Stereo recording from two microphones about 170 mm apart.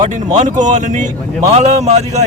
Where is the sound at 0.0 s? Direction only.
45° right (ahead or behind).